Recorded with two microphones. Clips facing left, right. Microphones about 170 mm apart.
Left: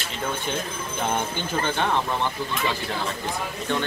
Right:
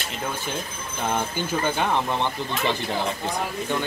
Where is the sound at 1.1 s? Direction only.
10° right (ahead or behind).